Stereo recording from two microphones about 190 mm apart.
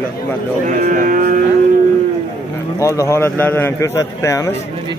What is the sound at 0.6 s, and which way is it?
Speech, 45° right (ahead or behind).